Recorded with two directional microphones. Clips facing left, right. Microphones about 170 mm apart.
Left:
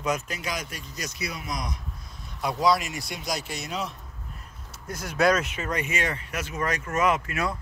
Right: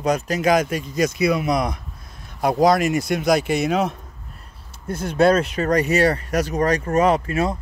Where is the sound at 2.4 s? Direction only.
50° right (ahead or behind).